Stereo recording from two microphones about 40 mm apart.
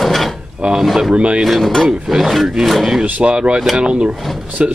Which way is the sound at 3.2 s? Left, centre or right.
Right.